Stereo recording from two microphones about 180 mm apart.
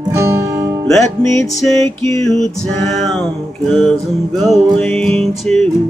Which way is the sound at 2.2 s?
Centre (ahead or behind).